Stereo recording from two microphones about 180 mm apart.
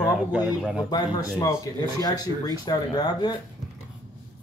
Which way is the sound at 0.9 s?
20° left (ahead or behind).